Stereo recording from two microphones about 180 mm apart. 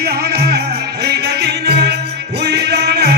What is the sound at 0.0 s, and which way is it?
Music, 60° right (ahead or behind).